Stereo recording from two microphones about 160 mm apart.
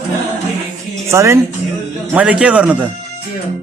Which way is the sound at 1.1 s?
20° right (ahead or behind).